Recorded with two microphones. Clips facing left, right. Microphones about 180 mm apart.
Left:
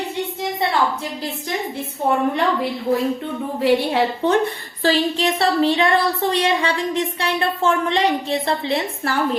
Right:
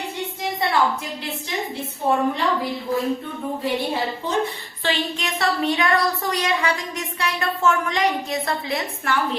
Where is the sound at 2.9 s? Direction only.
55° left (ahead or behind).